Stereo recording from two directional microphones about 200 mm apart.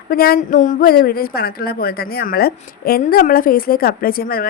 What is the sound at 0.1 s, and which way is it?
A woman's voice, 50° left (ahead or behind).